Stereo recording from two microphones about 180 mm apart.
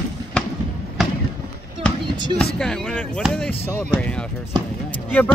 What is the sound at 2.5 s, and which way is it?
Speech, 5° left (ahead or behind).